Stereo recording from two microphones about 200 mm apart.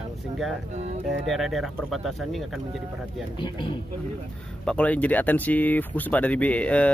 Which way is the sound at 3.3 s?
25° left (ahead or behind).